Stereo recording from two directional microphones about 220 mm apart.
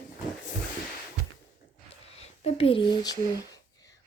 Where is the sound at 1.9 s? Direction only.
30° left (ahead or behind).